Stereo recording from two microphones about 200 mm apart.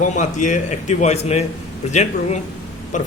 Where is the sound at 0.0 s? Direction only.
40° left (ahead or behind).